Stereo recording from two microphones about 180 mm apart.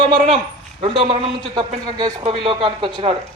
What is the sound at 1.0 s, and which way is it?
Speech, 25° right (ahead or behind).